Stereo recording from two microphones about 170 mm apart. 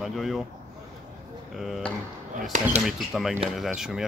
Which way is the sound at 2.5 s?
50° right (ahead or behind).